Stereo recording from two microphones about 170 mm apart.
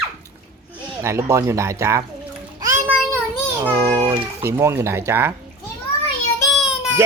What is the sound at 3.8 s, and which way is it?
Speech, 20° right (ahead or behind).